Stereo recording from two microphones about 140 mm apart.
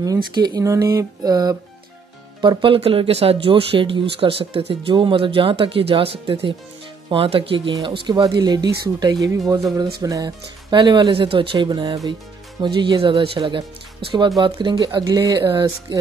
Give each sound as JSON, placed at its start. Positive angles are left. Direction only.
{"t": 0.0, "sound": "speech", "side_deg": -30}